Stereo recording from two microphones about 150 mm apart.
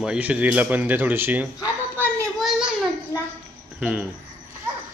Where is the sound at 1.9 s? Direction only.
10° left (ahead or behind).